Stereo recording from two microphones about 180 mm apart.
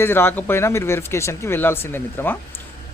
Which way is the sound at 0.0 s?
10° left (ahead or behind).